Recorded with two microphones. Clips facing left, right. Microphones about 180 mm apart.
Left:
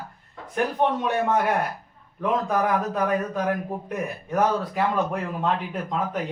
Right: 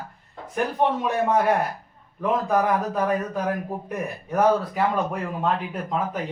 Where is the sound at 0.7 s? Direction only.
5° right (ahead or behind).